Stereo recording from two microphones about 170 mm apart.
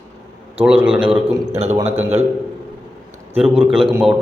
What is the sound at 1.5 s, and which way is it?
Speech, 40° right (ahead or behind).